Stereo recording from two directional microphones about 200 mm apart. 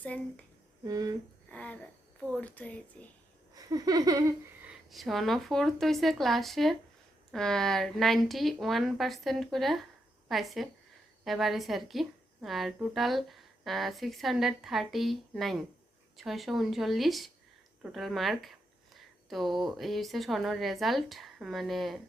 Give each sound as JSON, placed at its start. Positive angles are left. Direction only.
{"t": 0.0, "sound": "speech", "side_deg": 5}
{"t": 0.9, "sound": "speech", "side_deg": -15}
{"t": 1.5, "sound": "a sound", "side_deg": 5}
{"t": 2.4, "sound": "speech", "side_deg": 5}
{"t": 3.5, "sound": "a sound", "side_deg": -20}
{"t": 4.9, "sound": "a woman's voice", "side_deg": 0}